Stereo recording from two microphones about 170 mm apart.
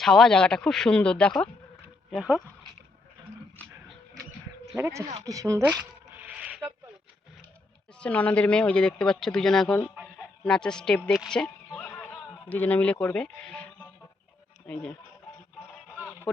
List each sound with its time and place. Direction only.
0.0 s speech: 5° left (ahead or behind)
4.7 s speech: 15° right (ahead or behind)
5.8 s a sound: 10° right (ahead or behind)
7.9 s speech: 5° left (ahead or behind)
14.7 s speech: 5° left (ahead or behind)
16.0 s music: 10° left (ahead or behind)